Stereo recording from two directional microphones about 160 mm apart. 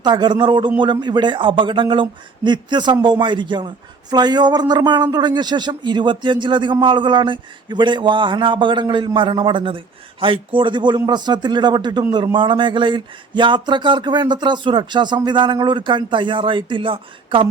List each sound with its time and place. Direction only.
0.0 s speech: 25° right (ahead or behind)